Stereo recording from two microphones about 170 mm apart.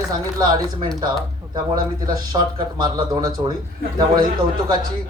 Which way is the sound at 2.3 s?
25° right (ahead or behind).